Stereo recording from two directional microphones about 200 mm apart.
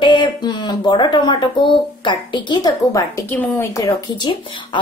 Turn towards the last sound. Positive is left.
turn(degrees=20)  # may be behind; listen again after turning